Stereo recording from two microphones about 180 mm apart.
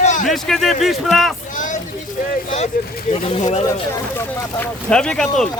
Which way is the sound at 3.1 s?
35° left (ahead or behind).